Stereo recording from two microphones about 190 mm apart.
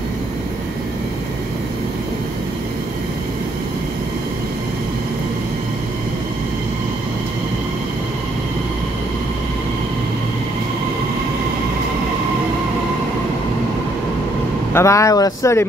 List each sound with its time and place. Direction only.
14.7 s speech: 15° left (ahead or behind)